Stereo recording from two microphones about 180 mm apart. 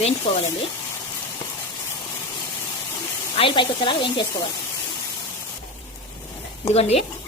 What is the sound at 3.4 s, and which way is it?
Sizzle, 30° left (ahead or behind).